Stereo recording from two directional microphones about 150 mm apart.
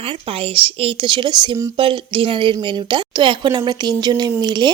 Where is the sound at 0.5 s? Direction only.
35° right (ahead or behind).